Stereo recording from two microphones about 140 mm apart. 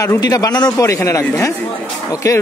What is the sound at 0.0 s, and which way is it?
A man's voice, 25° left (ahead or behind).